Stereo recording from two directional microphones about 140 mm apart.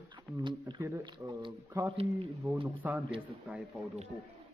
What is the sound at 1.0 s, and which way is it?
Speech, 30° right (ahead or behind).